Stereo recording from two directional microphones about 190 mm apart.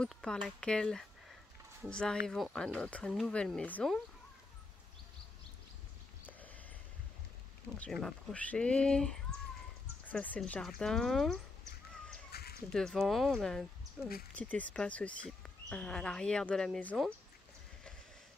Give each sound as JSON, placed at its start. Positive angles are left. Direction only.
{"t": 0.0, "sound": "speech", "side_deg": 5}
{"t": 7.8, "sound": "speech", "side_deg": 5}
{"t": 12.3, "sound": "a sound", "side_deg": 55}
{"t": 12.6, "sound": "speech", "side_deg": 5}
{"t": 14.3, "sound": "speech", "side_deg": 5}